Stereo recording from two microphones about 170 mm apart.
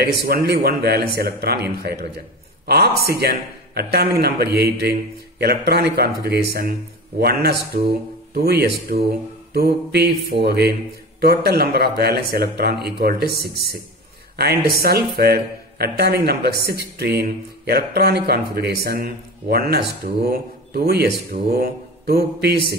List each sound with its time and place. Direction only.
0.0 s a man's voice: 65° right (ahead or behind)